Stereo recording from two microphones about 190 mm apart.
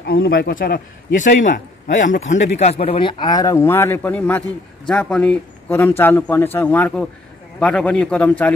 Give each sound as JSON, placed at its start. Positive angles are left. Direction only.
{"t": 0.0, "sound": "a man's voice", "side_deg": 55}